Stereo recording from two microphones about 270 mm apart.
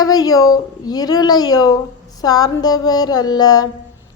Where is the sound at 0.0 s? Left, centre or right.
Centre.